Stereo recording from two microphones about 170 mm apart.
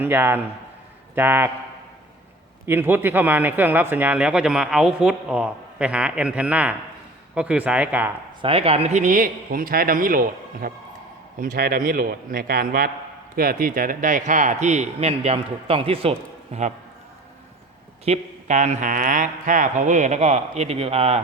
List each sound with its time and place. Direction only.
0.0 s speech: 15° right (ahead or behind)
2.6 s speech: 10° right (ahead or behind)
8.4 s a man's voice: 35° right (ahead or behind)
18.0 s a man's voice: 40° right (ahead or behind)